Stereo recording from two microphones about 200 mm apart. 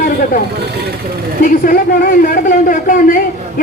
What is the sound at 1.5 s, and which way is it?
A man's voice, 45° left (ahead or behind).